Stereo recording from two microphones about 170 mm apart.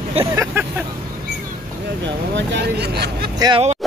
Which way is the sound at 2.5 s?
75° right (ahead or behind).